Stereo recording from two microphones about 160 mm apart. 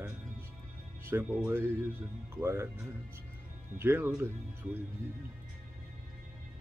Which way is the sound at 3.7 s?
15° right (ahead or behind).